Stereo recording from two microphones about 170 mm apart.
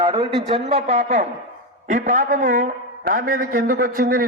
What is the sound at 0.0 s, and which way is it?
A woman's voice, 30° right (ahead or behind).